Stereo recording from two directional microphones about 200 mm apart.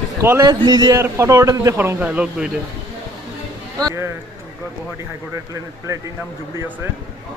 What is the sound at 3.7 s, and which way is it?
Speech, 15° right (ahead or behind).